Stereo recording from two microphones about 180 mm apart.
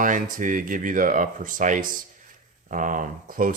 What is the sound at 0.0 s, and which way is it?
Speech, 50° right (ahead or behind).